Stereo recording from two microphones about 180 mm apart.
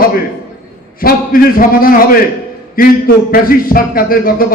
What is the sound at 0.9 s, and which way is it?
A man's voice, 50° left (ahead or behind).